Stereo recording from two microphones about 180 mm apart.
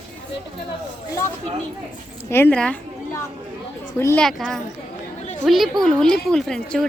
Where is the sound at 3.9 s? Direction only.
15° left (ahead or behind).